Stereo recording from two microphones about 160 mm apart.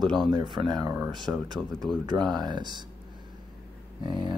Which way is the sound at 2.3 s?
25° right (ahead or behind).